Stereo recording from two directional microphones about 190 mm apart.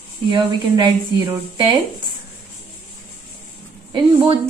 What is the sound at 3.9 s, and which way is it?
Speech, 25° right (ahead or behind).